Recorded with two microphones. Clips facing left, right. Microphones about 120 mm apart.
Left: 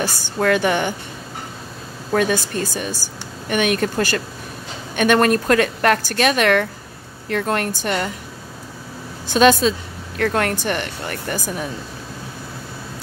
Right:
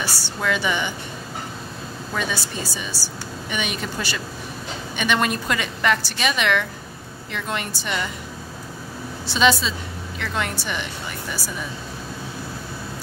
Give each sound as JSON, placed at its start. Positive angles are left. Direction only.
{"t": 0.4, "sound": "speech", "side_deg": 55}
{"t": 2.1, "sound": "speech", "side_deg": 50}
{"t": 9.3, "sound": "speech", "side_deg": 50}